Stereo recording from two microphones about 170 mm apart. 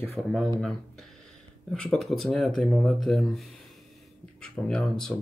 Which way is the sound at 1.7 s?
5° left (ahead or behind).